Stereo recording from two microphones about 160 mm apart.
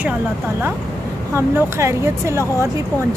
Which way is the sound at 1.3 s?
15° right (ahead or behind).